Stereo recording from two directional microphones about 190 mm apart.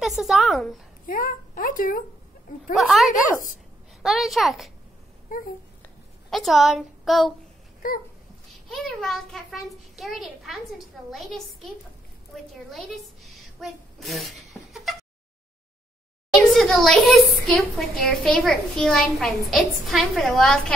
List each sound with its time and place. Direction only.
0.0 s a woman's voice: centre (ahead or behind)
1.0 s speech: 50° left (ahead or behind)
2.7 s a woman's voice: centre (ahead or behind)
5.3 s babbling: 45° left (ahead or behind)
6.3 s a woman's voice: centre (ahead or behind)
8.6 s a woman's voice: centre (ahead or behind)
16.4 s a woman's voice: centre (ahead or behind)